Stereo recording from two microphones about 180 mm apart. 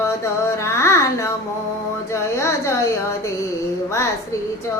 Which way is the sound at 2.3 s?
15° left (ahead or behind).